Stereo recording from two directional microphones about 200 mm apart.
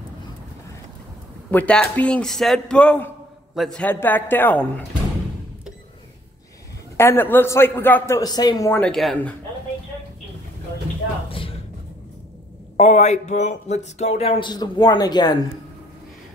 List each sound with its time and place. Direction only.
1.5 s a man's voice: 5° left (ahead or behind)
7.0 s a man's voice: 10° left (ahead or behind)
11.2 s a sound: 25° left (ahead or behind)
12.7 s speech: 35° left (ahead or behind); by 15.3 s 20° left (ahead or behind)